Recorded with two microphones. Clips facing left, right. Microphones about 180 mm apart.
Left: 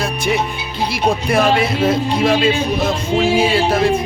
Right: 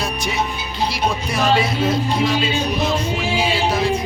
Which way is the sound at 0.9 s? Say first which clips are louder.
Left 7 dB; 55° left (ahead or behind).